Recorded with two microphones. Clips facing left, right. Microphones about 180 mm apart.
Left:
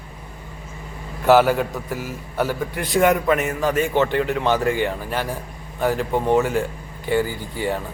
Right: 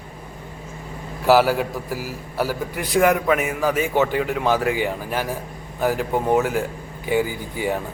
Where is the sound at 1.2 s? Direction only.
5° right (ahead or behind).